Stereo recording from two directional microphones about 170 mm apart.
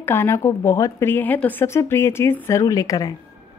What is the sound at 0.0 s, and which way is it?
A woman's voice, 15° left (ahead or behind).